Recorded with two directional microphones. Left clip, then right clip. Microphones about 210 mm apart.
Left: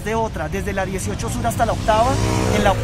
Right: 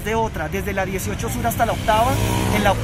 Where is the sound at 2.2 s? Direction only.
35° right (ahead or behind).